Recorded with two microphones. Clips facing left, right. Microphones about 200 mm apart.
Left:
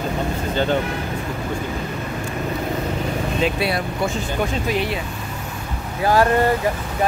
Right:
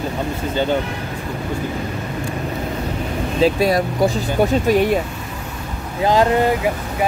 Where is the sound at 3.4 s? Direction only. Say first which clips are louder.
Right 8 dB; 40° right (ahead or behind).